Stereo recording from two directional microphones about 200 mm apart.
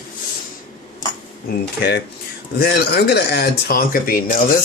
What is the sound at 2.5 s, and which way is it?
Speech, 55° left (ahead or behind).